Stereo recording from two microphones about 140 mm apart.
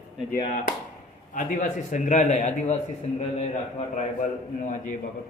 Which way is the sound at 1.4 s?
65° left (ahead or behind).